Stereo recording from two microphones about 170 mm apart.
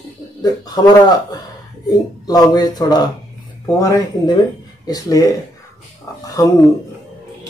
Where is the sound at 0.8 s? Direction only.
20° left (ahead or behind).